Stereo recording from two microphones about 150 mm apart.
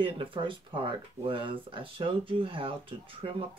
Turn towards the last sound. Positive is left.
turn(degrees=-35)  # may be behind; listen again after turning